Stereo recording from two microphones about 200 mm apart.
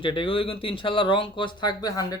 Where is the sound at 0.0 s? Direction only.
25° left (ahead or behind).